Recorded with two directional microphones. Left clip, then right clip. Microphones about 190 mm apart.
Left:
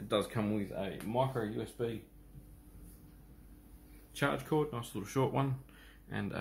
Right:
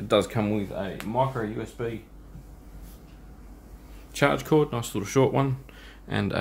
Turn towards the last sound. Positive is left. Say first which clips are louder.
# right 12 dB
turn(degrees=-25)  # may be behind; listen again after turning